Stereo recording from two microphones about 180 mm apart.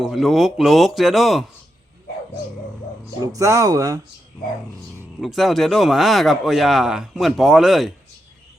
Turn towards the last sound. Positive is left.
turn(degrees=0)  # may be behind; listen again after turning